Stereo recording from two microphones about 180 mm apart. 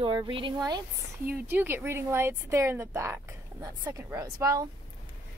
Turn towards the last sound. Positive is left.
turn(degrees=-15)  # may be behind; listen again after turning